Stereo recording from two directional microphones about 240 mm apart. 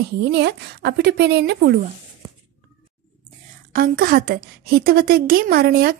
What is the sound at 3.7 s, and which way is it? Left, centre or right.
A woman's voice, right.